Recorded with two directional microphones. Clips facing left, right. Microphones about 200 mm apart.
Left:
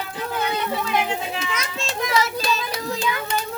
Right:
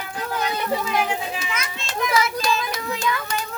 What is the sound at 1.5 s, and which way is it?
Children playing, 25° left (ahead or behind).